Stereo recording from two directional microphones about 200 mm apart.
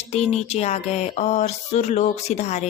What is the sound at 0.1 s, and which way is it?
Speech, 35° left (ahead or behind).